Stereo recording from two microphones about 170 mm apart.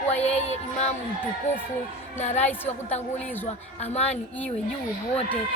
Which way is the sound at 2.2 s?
40° left (ahead or behind).